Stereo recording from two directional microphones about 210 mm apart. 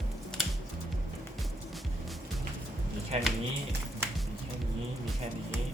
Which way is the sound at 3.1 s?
30° right (ahead or behind).